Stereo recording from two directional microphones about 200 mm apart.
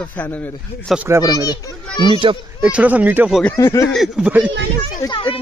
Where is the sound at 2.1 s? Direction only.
25° right (ahead or behind).